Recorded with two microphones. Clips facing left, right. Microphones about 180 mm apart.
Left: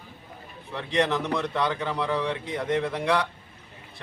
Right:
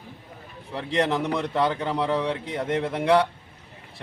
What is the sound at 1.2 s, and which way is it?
A man's voice, 15° right (ahead or behind).